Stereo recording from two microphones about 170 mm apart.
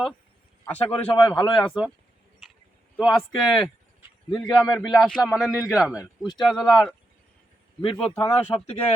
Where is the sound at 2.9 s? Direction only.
Centre (ahead or behind).